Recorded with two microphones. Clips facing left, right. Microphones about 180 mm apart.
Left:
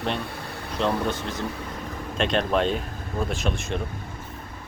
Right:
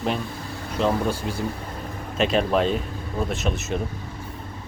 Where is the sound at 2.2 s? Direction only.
5° right (ahead or behind).